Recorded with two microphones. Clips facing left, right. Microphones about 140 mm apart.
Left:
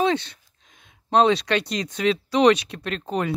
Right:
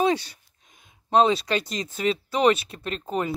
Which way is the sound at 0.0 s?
5° right (ahead or behind).